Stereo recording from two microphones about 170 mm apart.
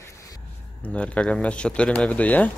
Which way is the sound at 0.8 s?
5° left (ahead or behind).